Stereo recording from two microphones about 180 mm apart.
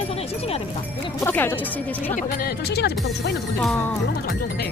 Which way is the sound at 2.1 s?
55° left (ahead or behind).